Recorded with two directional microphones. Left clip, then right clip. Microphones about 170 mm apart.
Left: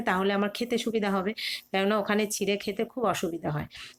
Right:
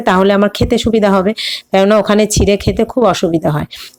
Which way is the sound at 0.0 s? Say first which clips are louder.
Right 16 dB; 50° right (ahead or behind).